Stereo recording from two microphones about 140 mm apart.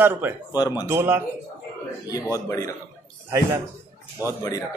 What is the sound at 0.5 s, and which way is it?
Speech, 25° left (ahead or behind).